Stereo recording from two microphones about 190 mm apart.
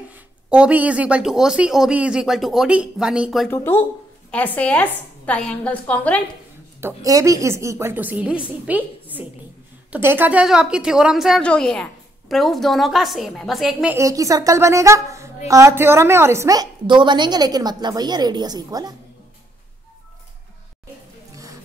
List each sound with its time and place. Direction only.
0.1 s a woman's voice: 5° right (ahead or behind)
3.5 s speech: 10° left (ahead or behind)
6.8 s a woman's voice: 15° right (ahead or behind)
13.9 s a woman's voice: 15° right (ahead or behind)